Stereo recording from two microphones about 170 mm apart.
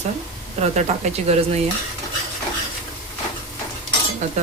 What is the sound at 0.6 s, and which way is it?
Speech, 40° right (ahead or behind).